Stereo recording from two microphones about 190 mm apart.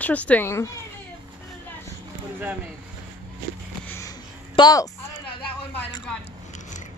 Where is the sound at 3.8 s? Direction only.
15° left (ahead or behind).